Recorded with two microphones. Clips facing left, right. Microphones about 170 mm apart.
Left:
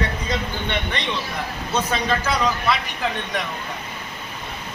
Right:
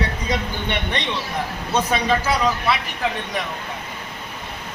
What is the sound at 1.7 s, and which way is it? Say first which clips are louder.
Speech: right 3 dB; 10° right (ahead or behind).